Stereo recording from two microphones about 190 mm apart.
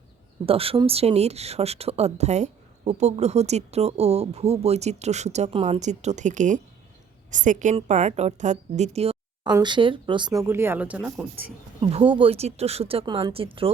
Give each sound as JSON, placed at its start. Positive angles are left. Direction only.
{"t": 0.4, "sound": "speech", "side_deg": -30}
{"t": 9.4, "sound": "speech", "side_deg": -20}
{"t": 11.8, "sound": "speech", "side_deg": -30}